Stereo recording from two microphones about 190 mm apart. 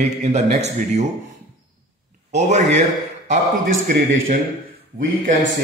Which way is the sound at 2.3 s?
35° right (ahead or behind).